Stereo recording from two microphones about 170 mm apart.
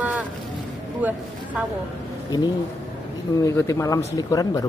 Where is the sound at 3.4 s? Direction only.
20° left (ahead or behind).